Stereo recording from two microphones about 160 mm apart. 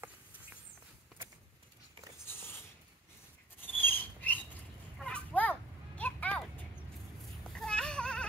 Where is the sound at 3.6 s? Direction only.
10° left (ahead or behind).